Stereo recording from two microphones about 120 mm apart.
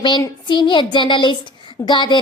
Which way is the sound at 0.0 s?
40° left (ahead or behind).